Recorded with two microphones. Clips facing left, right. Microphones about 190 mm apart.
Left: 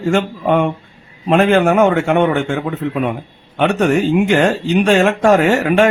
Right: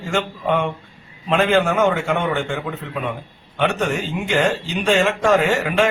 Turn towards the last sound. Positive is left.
turn(degrees=60)  # may be behind; listen again after turning